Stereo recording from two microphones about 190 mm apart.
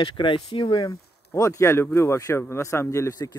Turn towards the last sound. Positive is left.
turn(degrees=20)  # may be behind; listen again after turning